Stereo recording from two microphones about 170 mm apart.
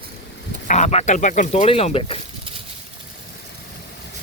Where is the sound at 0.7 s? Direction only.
40° left (ahead or behind).